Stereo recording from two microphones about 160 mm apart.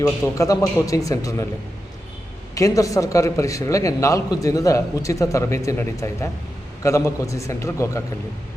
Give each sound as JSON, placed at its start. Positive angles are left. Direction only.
{"t": 0.0, "sound": "a man's voice", "side_deg": 20}
{"t": 2.6, "sound": "a man's voice", "side_deg": 20}